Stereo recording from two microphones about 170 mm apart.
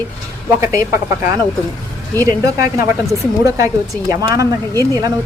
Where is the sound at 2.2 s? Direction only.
20° right (ahead or behind).